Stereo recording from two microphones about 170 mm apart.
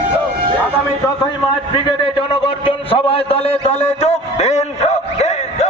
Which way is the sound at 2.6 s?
35° left (ahead or behind).